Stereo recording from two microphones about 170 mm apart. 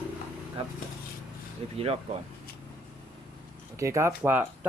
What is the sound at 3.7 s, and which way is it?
Speech, 15° right (ahead or behind).